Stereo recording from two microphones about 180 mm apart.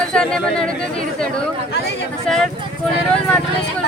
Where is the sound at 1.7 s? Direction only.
65° left (ahead or behind).